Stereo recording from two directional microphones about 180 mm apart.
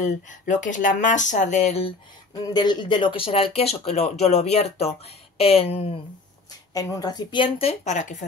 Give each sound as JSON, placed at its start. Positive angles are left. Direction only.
{"t": 0.0, "sound": "speech", "side_deg": 45}
{"t": 2.5, "sound": "speech", "side_deg": 25}
{"t": 6.7, "sound": "a woman's voice", "side_deg": 20}